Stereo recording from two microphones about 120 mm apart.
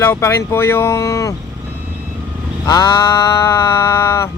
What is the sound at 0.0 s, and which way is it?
Speech, 20° left (ahead or behind).